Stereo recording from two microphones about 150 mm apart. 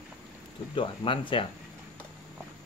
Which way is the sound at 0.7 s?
35° left (ahead or behind).